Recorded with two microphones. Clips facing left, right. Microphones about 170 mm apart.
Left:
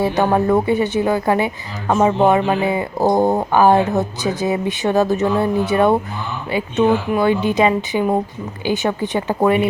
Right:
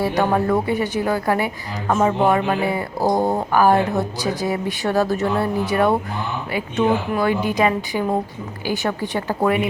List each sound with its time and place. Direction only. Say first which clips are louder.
0.0 s speech: left 3 dB; 20° left (ahead or behind)